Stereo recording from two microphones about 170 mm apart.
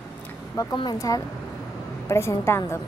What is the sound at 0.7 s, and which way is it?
A woman's voice, 20° left (ahead or behind).